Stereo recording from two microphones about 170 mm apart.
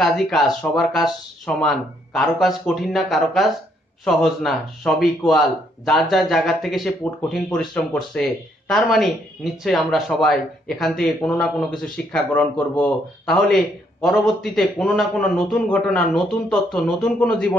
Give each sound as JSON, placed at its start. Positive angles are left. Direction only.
{"t": 0.0, "sound": "speech", "side_deg": 0}